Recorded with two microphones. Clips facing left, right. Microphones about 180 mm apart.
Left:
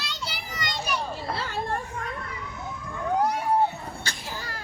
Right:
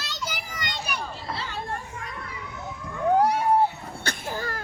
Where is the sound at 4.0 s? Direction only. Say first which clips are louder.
Right 5 dB; 55° right (ahead or behind).